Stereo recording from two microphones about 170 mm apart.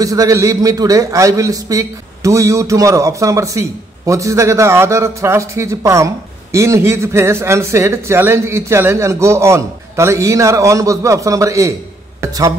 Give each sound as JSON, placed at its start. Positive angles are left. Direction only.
{"t": 0.0, "sound": "a man's voice", "side_deg": -20}